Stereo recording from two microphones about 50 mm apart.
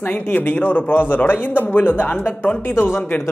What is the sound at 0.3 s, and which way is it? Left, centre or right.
Speech, left.